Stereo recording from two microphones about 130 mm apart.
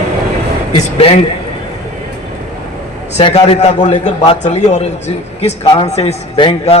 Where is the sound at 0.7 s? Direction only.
45° left (ahead or behind).